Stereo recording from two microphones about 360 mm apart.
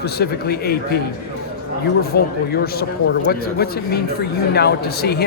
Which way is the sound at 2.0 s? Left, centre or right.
Left.